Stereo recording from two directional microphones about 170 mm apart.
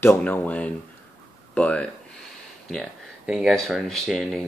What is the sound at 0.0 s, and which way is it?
Speech, 10° left (ahead or behind).